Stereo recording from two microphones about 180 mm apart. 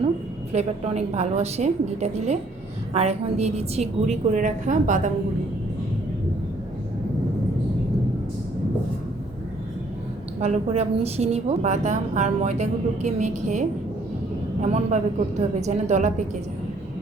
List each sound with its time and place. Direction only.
0.5 s a woman's voice: 40° right (ahead or behind)
10.4 s a woman's voice: 35° right (ahead or behind)